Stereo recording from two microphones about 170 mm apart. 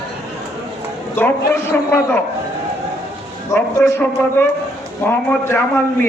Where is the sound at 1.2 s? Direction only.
10° left (ahead or behind).